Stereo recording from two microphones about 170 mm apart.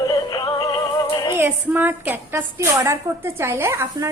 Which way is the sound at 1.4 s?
10° right (ahead or behind).